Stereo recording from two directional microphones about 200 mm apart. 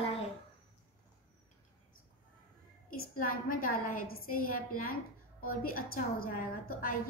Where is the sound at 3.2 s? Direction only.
45° left (ahead or behind).